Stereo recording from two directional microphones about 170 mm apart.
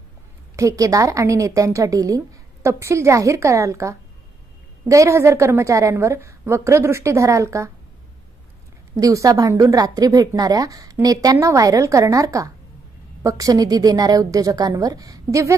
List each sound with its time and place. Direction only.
0.6 s a woman's voice: 20° right (ahead or behind)
9.0 s speech: 20° right (ahead or behind)